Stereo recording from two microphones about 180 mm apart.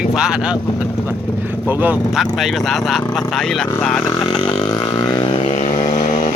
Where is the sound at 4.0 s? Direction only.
20° left (ahead or behind).